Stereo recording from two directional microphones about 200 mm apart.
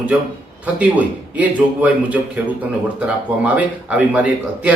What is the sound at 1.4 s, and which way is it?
A man's voice, 10° right (ahead or behind).